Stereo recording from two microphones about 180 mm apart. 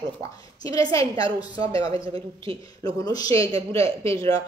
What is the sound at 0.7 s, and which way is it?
Speech, 20° left (ahead or behind).